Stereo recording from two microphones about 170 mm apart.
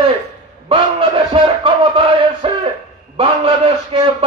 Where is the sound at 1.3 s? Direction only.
30° right (ahead or behind).